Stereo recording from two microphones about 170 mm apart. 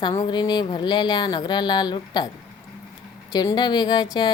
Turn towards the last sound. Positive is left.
turn(degrees=25)  # may be behind; listen again after turning